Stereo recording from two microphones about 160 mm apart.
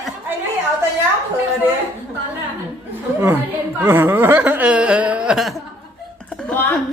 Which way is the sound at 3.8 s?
10° right (ahead or behind).